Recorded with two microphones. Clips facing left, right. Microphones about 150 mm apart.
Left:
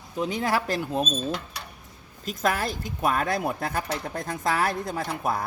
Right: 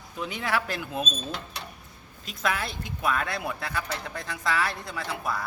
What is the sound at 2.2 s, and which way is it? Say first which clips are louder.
Speech: left 4 dB; 45° left (ahead or behind).